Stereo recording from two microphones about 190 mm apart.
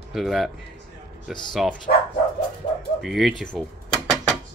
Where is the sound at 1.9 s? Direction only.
45° left (ahead or behind).